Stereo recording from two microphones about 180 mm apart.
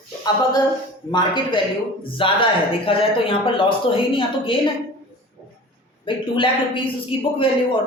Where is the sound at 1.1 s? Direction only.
25° left (ahead or behind).